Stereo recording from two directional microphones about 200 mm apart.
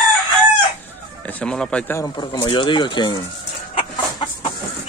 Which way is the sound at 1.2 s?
5° left (ahead or behind).